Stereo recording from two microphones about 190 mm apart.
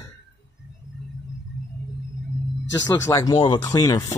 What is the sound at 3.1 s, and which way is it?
Speech, 20° left (ahead or behind).